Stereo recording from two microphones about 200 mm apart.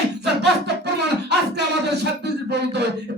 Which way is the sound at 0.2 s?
55° right (ahead or behind).